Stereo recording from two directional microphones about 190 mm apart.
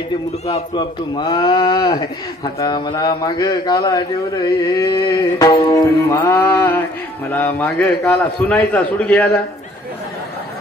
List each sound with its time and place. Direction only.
0.7 s a man's voice: 25° left (ahead or behind); by 9.4 s 5° left (ahead or behind)